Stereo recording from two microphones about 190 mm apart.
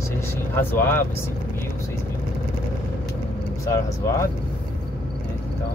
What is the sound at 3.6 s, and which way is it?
Speech, 15° left (ahead or behind).